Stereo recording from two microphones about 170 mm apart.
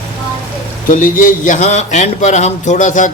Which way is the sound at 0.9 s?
50° left (ahead or behind).